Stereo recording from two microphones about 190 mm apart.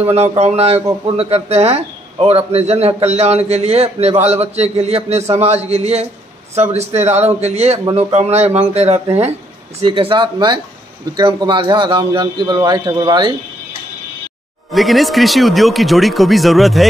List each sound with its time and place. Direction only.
0.0 s a man's voice: 35° right (ahead or behind)
0.7 s a man's voice: 15° right (ahead or behind)
1.1 s a man's voice: 35° right (ahead or behind)
14.7 s speech: centre (ahead or behind)